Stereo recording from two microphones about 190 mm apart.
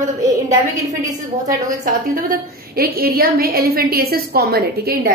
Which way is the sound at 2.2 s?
50° right (ahead or behind).